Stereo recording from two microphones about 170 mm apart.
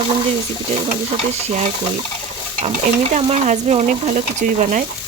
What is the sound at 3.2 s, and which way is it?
Frying, 40° right (ahead or behind).